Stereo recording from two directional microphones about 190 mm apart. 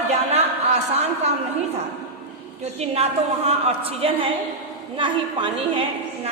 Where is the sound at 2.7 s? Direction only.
35° right (ahead or behind).